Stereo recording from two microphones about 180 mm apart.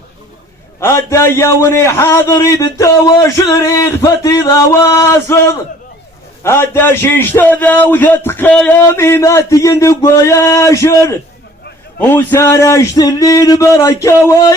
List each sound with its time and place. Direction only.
0.8 s a man's voice: 15° left (ahead or behind)